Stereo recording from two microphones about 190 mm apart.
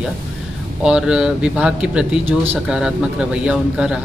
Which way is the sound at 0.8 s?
5° right (ahead or behind).